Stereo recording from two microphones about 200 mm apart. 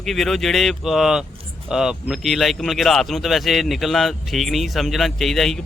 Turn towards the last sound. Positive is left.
turn(degrees=0)  # may be behind; listen again after turning